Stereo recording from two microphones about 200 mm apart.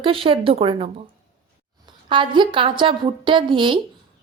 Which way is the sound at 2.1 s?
25° right (ahead or behind).